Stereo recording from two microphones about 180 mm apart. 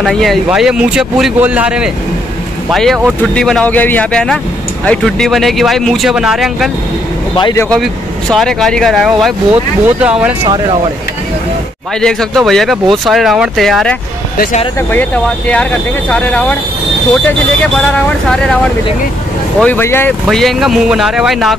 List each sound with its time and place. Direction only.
0.0 s speech: centre (ahead or behind)
7.7 s speech: centre (ahead or behind)
10.4 s speech: 30° right (ahead or behind)
12.0 s speech: 5° left (ahead or behind)
14.3 s speech: 55° left (ahead or behind)
14.9 s speech: 10° left (ahead or behind)
19.6 s speech: 10° left (ahead or behind)
20.2 s speech: centre (ahead or behind)